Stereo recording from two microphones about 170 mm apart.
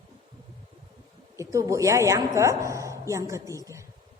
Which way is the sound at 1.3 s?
20° right (ahead or behind).